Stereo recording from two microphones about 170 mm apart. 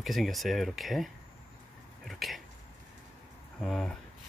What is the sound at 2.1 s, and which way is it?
Speech, centre (ahead or behind).